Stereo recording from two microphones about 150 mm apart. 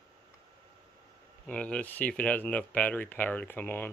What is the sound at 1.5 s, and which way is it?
Speech, 10° left (ahead or behind).